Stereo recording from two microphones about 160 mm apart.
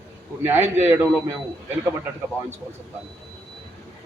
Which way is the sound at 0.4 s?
15° right (ahead or behind).